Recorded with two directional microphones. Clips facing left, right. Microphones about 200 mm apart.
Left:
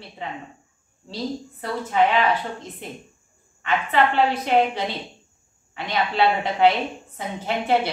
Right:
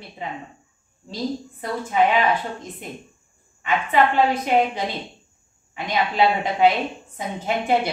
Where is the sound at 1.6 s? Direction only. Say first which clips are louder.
Even; 15° right (ahead or behind).